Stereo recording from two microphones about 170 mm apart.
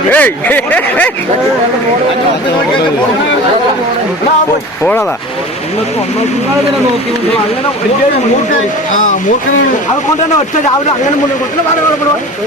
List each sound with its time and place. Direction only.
0.1 s speech: 10° left (ahead or behind)
4.8 s speech: 10° left (ahead or behind)